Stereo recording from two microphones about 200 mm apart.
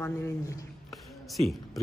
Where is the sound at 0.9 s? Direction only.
Centre (ahead or behind).